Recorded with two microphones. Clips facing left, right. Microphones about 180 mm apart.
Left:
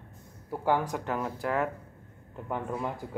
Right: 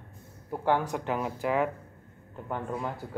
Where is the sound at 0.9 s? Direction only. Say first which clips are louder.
Right 1 dB; 5° right (ahead or behind).